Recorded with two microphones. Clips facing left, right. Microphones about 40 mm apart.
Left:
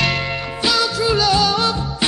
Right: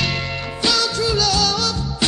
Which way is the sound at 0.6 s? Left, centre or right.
Centre.